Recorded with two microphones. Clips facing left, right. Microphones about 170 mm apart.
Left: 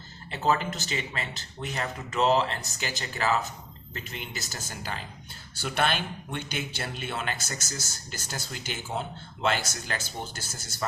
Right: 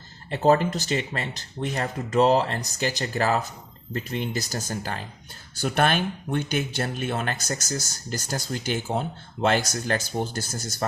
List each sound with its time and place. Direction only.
0.4 s speech: 40° right (ahead or behind)